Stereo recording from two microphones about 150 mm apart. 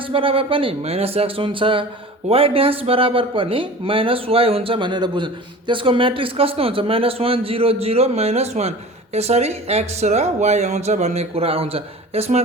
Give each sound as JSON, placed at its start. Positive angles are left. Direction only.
{"t": 0.1, "sound": "a man's voice", "side_deg": -35}